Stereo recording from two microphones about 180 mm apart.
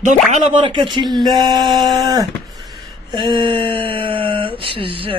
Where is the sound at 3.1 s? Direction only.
25° right (ahead or behind).